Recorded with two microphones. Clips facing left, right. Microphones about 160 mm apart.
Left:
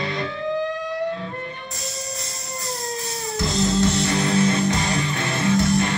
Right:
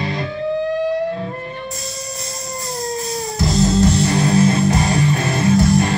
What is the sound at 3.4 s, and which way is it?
Music, 35° right (ahead or behind).